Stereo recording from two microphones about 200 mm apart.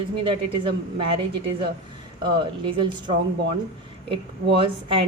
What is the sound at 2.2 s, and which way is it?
Speech, 25° right (ahead or behind).